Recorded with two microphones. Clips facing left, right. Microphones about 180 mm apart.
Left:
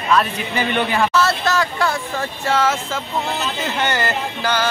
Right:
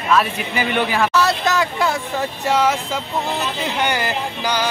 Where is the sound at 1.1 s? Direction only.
15° right (ahead or behind).